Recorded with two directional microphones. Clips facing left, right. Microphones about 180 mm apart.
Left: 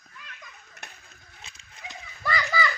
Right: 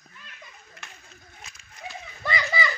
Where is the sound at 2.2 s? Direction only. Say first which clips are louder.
Even; 20° right (ahead or behind).